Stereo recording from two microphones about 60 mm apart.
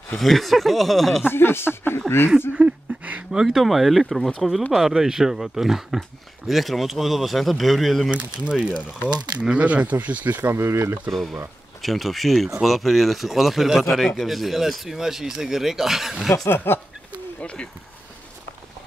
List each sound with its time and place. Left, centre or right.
0.2 s a man's voice: centre
1.2 s speech: left
2.5 s a sound: right
3.3 s a man's voice: centre
8.1 s speech: centre
10.5 s speech: right
11.1 s a man's voice: centre
16.4 s speech: left
17.4 s speech: centre